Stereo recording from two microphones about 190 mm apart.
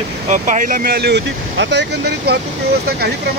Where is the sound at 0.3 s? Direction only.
40° right (ahead or behind); by 2.3 s 65° right (ahead or behind).